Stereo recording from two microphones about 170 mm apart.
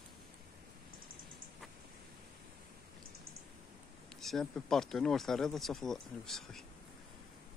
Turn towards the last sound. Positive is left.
turn(degrees=0)  # may be behind; listen again after turning